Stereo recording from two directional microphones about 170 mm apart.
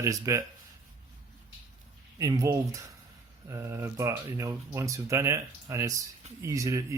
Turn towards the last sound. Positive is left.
turn(degrees=-20)  # may be behind; listen again after turning